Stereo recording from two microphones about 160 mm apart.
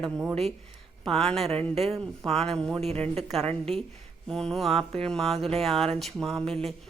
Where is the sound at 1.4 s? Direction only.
40° right (ahead or behind).